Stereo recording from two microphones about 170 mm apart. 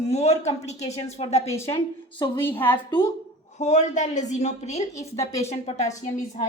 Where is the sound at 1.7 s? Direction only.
30° left (ahead or behind).